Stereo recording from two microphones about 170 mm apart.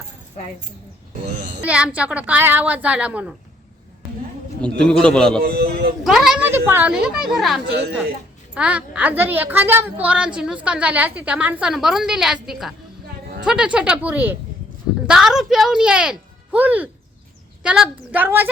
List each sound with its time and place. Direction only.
1.6 s a woman's voice: 10° right (ahead or behind)
4.6 s speech: 5° left (ahead or behind)
5.4 s a man's voice: 65° right (ahead or behind)
6.1 s speech: centre (ahead or behind)
6.5 s a woman's voice: 15° right (ahead or behind)